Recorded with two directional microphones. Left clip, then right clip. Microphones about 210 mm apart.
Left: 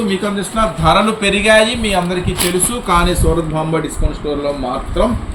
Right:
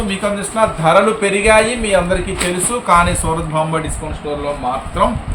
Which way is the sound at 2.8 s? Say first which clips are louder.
Right 3 dB; 40° right (ahead or behind).